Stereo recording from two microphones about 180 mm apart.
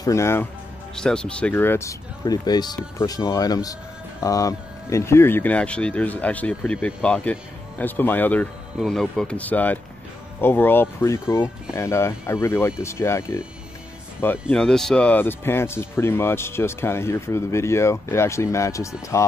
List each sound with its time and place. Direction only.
0.0 s speech: 15° left (ahead or behind)